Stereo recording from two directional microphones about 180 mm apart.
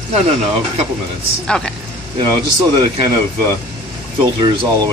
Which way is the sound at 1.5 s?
5° left (ahead or behind).